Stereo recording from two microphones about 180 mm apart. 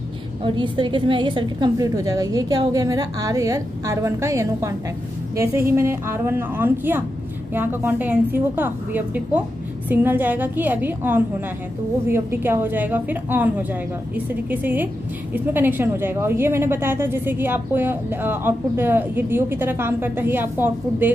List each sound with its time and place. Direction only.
0.4 s a woman's voice: 25° right (ahead or behind); by 21.1 s 10° right (ahead or behind)